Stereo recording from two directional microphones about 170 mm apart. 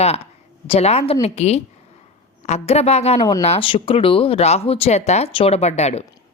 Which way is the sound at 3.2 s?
20° left (ahead or behind).